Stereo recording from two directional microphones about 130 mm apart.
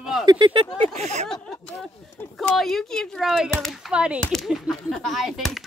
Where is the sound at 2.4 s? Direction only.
Centre (ahead or behind).